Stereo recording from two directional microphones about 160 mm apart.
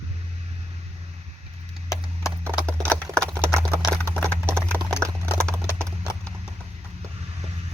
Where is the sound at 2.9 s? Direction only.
20° right (ahead or behind).